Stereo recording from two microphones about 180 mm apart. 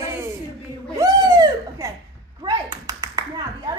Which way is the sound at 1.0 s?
20° right (ahead or behind).